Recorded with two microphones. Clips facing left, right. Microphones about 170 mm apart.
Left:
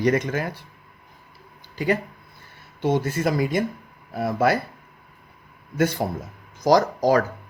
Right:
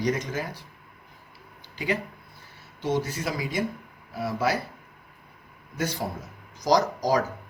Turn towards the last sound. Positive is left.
turn(degrees=55)  # may be behind; listen again after turning